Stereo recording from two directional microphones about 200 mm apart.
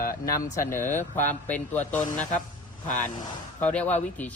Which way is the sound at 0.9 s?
10° left (ahead or behind).